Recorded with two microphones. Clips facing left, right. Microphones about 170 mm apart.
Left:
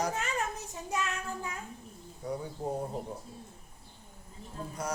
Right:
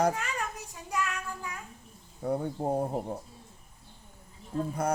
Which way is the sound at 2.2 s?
55° right (ahead or behind).